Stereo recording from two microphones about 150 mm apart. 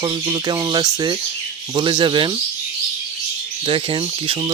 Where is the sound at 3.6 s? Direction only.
35° right (ahead or behind).